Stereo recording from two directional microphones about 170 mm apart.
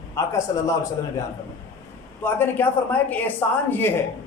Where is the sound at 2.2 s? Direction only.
10° left (ahead or behind).